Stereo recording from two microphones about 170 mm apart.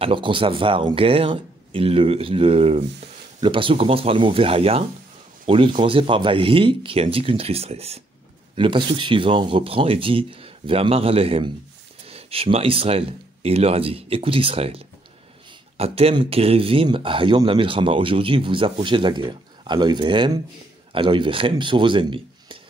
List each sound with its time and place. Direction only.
0.0 s speech: 30° right (ahead or behind)